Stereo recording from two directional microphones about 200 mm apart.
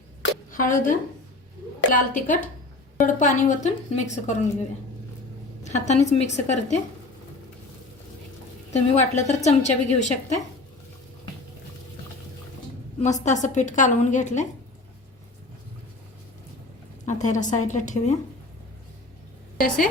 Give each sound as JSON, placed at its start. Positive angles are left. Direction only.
{"t": 0.5, "sound": "a woman's voice", "side_deg": 40}
{"t": 5.6, "sound": "a woman's voice", "side_deg": 35}
{"t": 8.7, "sound": "a woman's voice", "side_deg": 35}
{"t": 13.0, "sound": "a woman's voice", "side_deg": 35}
{"t": 17.1, "sound": "a woman's voice", "side_deg": 35}
{"t": 19.5, "sound": "a woman's voice", "side_deg": 45}